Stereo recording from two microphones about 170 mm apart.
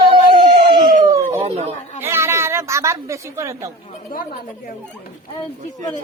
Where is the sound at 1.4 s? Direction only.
35° right (ahead or behind).